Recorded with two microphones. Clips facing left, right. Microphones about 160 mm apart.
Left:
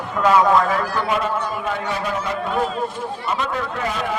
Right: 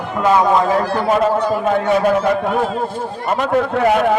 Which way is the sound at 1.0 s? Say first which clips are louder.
Right 6 dB; 40° right (ahead or behind).